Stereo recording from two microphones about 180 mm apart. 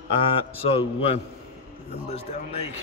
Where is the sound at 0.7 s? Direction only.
30° left (ahead or behind).